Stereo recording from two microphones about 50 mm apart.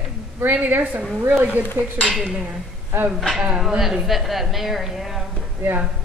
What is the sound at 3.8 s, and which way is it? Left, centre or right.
A woman's voice, centre.